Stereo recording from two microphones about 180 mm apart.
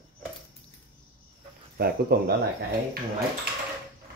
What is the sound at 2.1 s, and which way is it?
Speech, 60° right (ahead or behind).